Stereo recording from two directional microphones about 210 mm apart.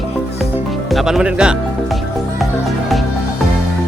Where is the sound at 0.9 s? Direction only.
Centre (ahead or behind).